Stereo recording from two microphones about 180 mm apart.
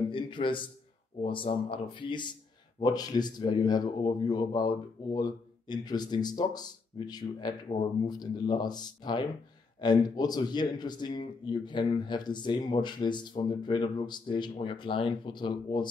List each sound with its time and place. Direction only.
0.1 s a man's voice: 30° left (ahead or behind)